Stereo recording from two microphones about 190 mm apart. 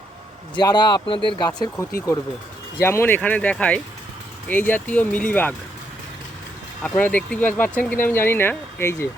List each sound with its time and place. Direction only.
0.5 s speech: 20° left (ahead or behind)
2.8 s speech: 10° left (ahead or behind)
6.8 s speech: 10° left (ahead or behind)